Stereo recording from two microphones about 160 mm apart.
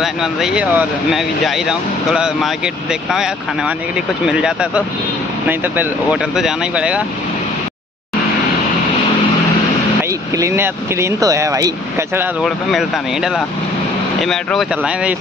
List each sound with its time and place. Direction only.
0.0 s speech: 5° right (ahead or behind)
10.0 s speech: 20° right (ahead or behind)
12.4 s speech: centre (ahead or behind)
14.9 s speech: 5° right (ahead or behind)